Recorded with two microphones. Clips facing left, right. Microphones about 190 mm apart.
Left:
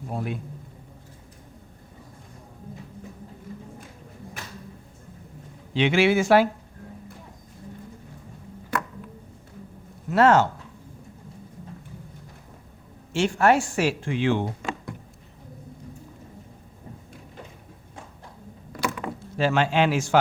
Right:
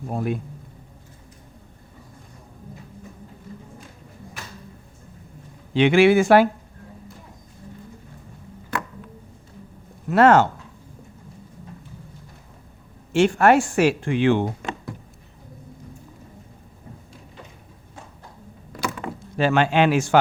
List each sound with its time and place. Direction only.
0.1 s speech: 45° right (ahead or behind)
5.7 s speech: 55° right (ahead or behind)
10.1 s speech: 60° right (ahead or behind)
13.1 s speech: 60° right (ahead or behind)
18.9 s door: centre (ahead or behind)
19.4 s speech: 60° right (ahead or behind)